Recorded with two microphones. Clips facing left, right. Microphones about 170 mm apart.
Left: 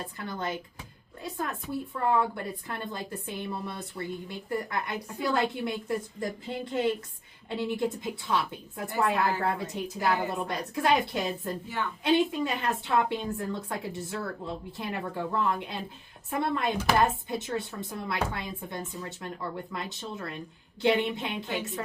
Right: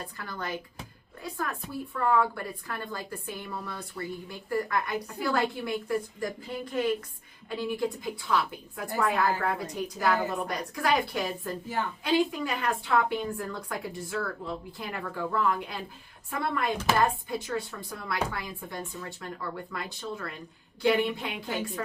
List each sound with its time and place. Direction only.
0.2 s a woman's voice: 25° left (ahead or behind)